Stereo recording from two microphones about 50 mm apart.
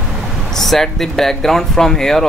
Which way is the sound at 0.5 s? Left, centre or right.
Centre.